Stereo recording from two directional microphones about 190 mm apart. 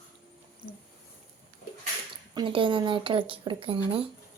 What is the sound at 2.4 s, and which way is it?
Speech, 25° right (ahead or behind).